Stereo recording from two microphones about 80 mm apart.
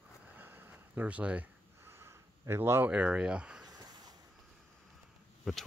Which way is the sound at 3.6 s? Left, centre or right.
Right.